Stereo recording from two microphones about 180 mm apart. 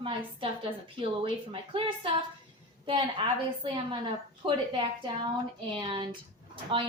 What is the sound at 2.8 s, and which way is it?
A woman's voice, 30° right (ahead or behind).